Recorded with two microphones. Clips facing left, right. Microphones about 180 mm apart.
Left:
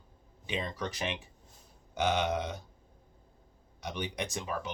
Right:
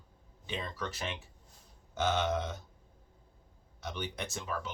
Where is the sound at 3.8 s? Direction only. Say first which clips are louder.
Left 3 dB; 15° left (ahead or behind).